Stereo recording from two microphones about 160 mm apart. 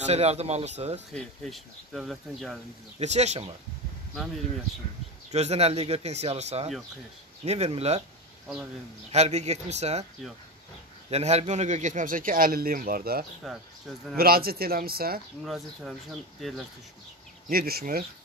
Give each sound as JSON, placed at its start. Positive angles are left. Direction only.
{"t": 0.0, "sound": "speech", "side_deg": -40}
{"t": 1.1, "sound": "speech", "side_deg": 0}
{"t": 3.0, "sound": "speech", "side_deg": -45}
{"t": 5.3, "sound": "speech", "side_deg": -40}
{"t": 9.1, "sound": "speech", "side_deg": -45}
{"t": 11.1, "sound": "a man's voice", "side_deg": -40}
{"t": 13.4, "sound": "speech", "side_deg": 0}
{"t": 14.1, "sound": "speech", "side_deg": -70}
{"t": 15.4, "sound": "speech", "side_deg": 0}
{"t": 17.5, "sound": "speech", "side_deg": -70}